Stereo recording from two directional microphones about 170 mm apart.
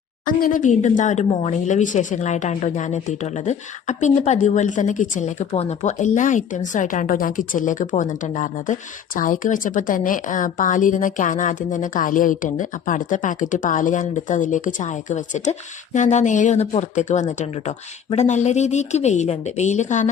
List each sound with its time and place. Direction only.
0.3 s speech: 55° left (ahead or behind)